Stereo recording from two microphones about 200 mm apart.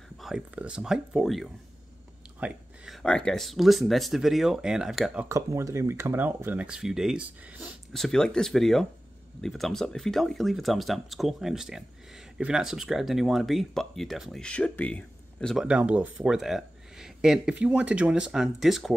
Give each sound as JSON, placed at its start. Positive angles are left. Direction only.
{"t": 0.2, "sound": "speech", "side_deg": -5}
{"t": 5.3, "sound": "speech", "side_deg": -15}